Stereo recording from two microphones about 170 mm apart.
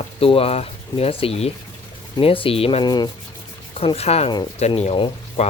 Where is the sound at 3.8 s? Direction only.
35° left (ahead or behind).